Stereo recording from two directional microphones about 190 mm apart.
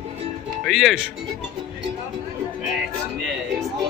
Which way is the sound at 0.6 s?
Centre (ahead or behind).